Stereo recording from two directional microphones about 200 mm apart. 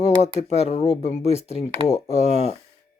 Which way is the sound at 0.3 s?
30° left (ahead or behind).